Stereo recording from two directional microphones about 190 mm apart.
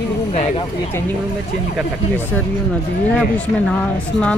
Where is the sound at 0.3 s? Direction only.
35° left (ahead or behind).